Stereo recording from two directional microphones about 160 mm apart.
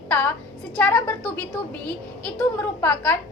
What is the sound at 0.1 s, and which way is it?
A woman's voice, 15° left (ahead or behind).